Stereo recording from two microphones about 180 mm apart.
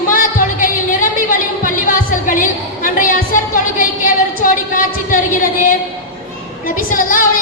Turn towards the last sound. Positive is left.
turn(degrees=50)  # may be behind; listen again after turning